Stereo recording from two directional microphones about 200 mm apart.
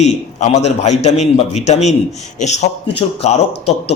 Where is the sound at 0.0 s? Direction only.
35° left (ahead or behind).